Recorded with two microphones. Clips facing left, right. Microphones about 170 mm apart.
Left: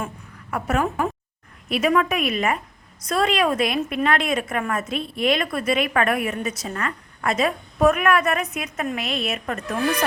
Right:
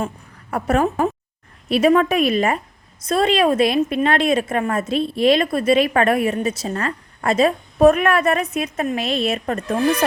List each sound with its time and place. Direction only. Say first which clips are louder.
0.5 s a woman's voice: right 4 dB; 35° right (ahead or behind)